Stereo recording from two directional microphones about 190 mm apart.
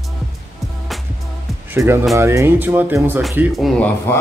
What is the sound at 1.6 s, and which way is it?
Speech, 10° right (ahead or behind).